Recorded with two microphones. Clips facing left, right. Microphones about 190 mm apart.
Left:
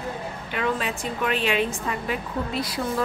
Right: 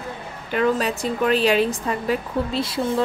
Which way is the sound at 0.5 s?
40° right (ahead or behind).